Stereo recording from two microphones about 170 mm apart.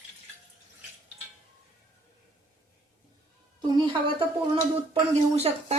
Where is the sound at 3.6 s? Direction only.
30° right (ahead or behind).